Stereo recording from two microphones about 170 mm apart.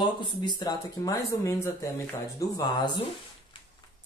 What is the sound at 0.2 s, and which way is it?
Speech, 25° left (ahead or behind).